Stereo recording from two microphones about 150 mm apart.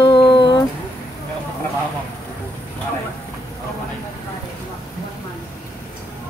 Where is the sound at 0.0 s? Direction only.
30° left (ahead or behind).